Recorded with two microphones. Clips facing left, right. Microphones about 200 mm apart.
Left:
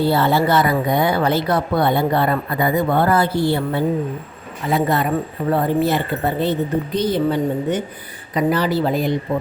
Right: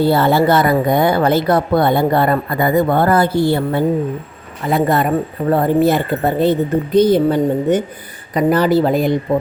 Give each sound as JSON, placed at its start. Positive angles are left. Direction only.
{"t": 0.1, "sound": "a woman's voice", "side_deg": -50}